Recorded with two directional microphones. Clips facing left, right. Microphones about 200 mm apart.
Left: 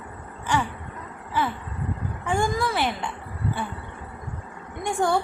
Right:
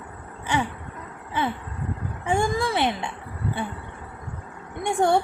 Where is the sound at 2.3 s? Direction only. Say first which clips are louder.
Right 1 dB; 25° right (ahead or behind).